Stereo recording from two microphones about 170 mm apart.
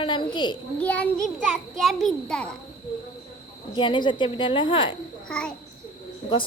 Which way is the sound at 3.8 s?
25° left (ahead or behind).